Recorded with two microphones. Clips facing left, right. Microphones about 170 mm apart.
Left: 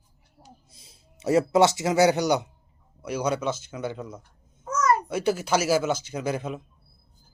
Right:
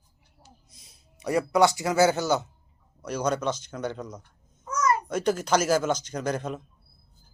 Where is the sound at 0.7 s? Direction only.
25° left (ahead or behind).